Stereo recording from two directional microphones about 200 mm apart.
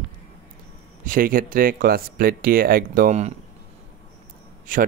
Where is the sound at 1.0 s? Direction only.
45° right (ahead or behind).